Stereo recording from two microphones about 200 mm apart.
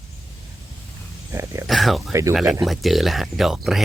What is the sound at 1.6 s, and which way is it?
Speech, centre (ahead or behind).